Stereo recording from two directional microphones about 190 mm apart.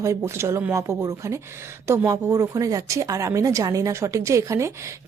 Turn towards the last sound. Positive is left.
turn(degrees=-15)  # may be behind; listen again after turning